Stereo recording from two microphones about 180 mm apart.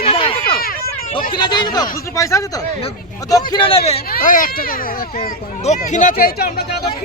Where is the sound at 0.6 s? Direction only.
55° left (ahead or behind).